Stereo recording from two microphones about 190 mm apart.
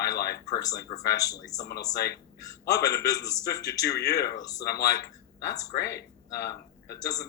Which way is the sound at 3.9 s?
60° left (ahead or behind).